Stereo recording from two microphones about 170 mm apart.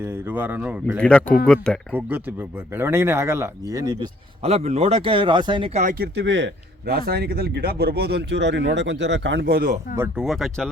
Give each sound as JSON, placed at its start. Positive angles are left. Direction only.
{"t": 0.0, "sound": "speech", "side_deg": -15}
{"t": 0.9, "sound": "speech", "side_deg": 5}
{"t": 1.9, "sound": "speech", "side_deg": -10}
{"t": 4.4, "sound": "speech", "side_deg": -40}
{"t": 5.8, "sound": "speech", "side_deg": -55}
{"t": 6.1, "sound": "speech", "side_deg": -90}
{"t": 10.2, "sound": "speech", "side_deg": 0}